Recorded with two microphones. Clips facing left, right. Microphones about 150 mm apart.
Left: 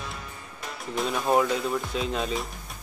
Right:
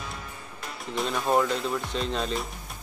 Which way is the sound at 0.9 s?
Centre (ahead or behind).